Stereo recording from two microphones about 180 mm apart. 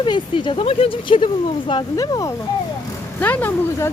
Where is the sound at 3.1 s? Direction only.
10° left (ahead or behind).